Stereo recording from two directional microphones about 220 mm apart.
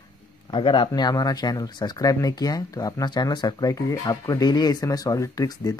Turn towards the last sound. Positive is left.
turn(degrees=15)  # may be behind; listen again after turning